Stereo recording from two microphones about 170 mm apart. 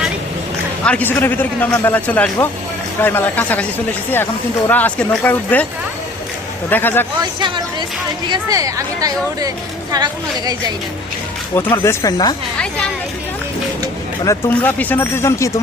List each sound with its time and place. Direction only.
0.9 s speech: 10° left (ahead or behind)
4.7 s speech: 10° left (ahead or behind)
6.7 s speech: 10° left (ahead or behind)
7.2 s speech: 25° right (ahead or behind)
11.5 s speech: 15° left (ahead or behind)
14.3 s speech: 15° left (ahead or behind)